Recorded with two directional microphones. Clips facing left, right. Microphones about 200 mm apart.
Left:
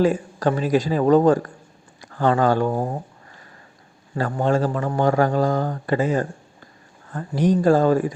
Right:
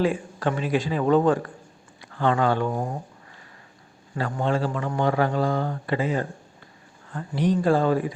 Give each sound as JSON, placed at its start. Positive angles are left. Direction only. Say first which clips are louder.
{"t": 0.0, "sound": "a man's voice", "louder": "left 5 dB", "side_deg": 40}
{"t": 4.1, "sound": "a man's voice", "louder": "left 4 dB", "side_deg": 40}